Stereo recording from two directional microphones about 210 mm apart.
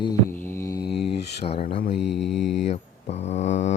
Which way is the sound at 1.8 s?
55° left (ahead or behind).